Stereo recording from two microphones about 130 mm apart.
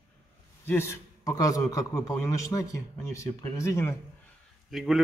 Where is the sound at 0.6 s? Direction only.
20° left (ahead or behind).